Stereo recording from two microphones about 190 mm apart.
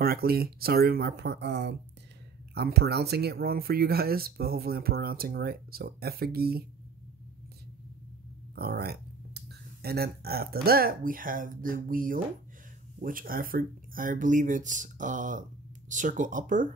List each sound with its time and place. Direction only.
0.0 s speech: 50° right (ahead or behind)
8.5 s speech: 55° right (ahead or behind)